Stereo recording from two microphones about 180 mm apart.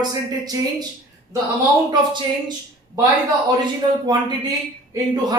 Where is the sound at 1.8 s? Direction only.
25° right (ahead or behind).